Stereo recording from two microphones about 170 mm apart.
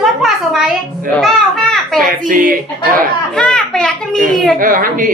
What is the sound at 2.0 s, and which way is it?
Speech, 50° right (ahead or behind).